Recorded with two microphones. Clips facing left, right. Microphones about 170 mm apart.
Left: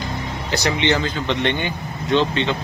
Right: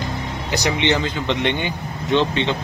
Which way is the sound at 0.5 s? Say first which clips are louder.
Even; 15° right (ahead or behind).